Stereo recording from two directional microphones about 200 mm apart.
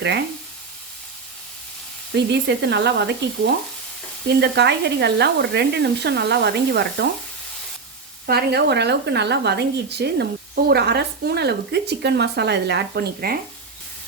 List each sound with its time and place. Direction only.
2.1 s speech: 60° right (ahead or behind)
8.3 s speech: 55° right (ahead or behind)